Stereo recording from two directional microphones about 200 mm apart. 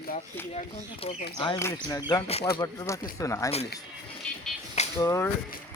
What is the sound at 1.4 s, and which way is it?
A man's voice, 20° left (ahead or behind).